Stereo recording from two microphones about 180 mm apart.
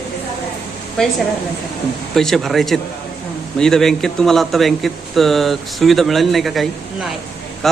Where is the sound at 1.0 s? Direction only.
5° left (ahead or behind).